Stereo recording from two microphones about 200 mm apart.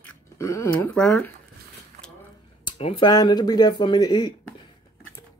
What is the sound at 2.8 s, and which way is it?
Speech, 25° left (ahead or behind).